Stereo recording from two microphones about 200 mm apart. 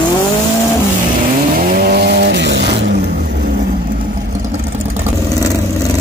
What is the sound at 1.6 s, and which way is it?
Vehicle, 45° right (ahead or behind).